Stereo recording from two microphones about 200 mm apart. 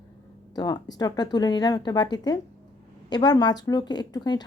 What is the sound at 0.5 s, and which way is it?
A woman's voice, 20° left (ahead or behind).